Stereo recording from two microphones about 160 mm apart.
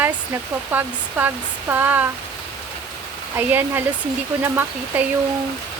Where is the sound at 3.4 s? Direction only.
10° right (ahead or behind).